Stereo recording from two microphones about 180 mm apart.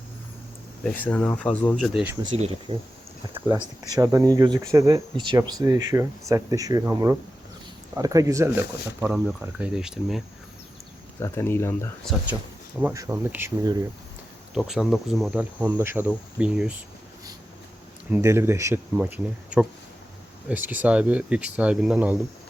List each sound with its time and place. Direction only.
0.9 s speech: 10° left (ahead or behind)
2.2 s speech: 35° right (ahead or behind)
3.9 s speech: 20° right (ahead or behind); by 10.2 s 5° right (ahead or behind)
11.2 s speech: 15° left (ahead or behind)
12.0 s speech: 10° right (ahead or behind)
14.5 s insect: centre (ahead or behind)
18.1 s speech: 15° right (ahead or behind)